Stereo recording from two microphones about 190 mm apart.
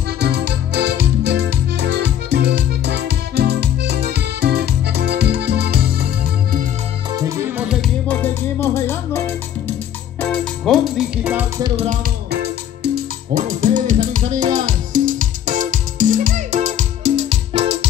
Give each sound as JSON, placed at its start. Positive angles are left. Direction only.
{"t": 0.2, "sound": "music", "side_deg": -60}
{"t": 7.2, "sound": "music", "side_deg": -15}
{"t": 8.1, "sound": "music", "side_deg": 10}
{"t": 11.6, "sound": "music", "side_deg": -30}
{"t": 12.8, "sound": "music", "side_deg": -50}